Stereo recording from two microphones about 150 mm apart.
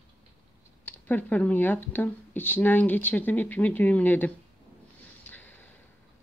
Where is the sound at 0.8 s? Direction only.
10° left (ahead or behind).